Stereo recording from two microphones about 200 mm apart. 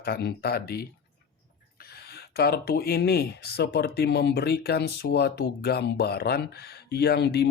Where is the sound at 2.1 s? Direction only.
50° left (ahead or behind).